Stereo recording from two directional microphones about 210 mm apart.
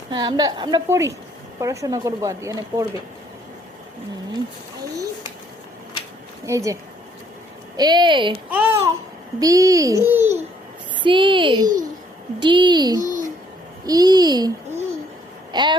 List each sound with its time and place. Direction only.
0.1 s a woman's voice: 20° right (ahead or behind)
6.4 s speech: 15° right (ahead or behind)
7.8 s a woman's voice: 20° right (ahead or behind)
8.4 s babbling: 10° right (ahead or behind)
9.4 s speech: 15° right (ahead or behind)
11.0 s a woman's voice: 25° right (ahead or behind)
13.1 s a sound: 40° right (ahead or behind)
13.8 s a woman's voice: 20° right (ahead or behind)
15.5 s a woman's voice: 20° right (ahead or behind)